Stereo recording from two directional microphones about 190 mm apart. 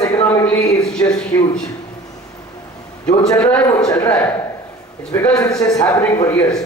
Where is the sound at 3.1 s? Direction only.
5° left (ahead or behind).